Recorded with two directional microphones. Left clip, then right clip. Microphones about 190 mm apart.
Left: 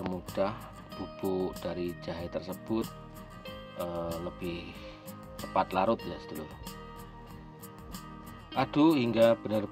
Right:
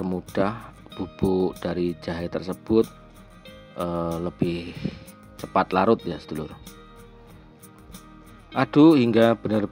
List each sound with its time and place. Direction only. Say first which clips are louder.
0.3 s speech: right 6 dB; 25° right (ahead or behind)
8.5 s speech: right 9 dB; 25° right (ahead or behind)